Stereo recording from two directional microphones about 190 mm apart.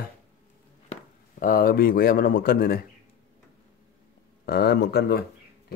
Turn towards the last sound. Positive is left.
turn(degrees=55)  # may be behind; listen again after turning